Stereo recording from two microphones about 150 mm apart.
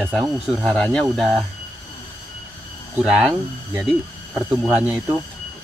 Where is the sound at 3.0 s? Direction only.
Centre (ahead or behind).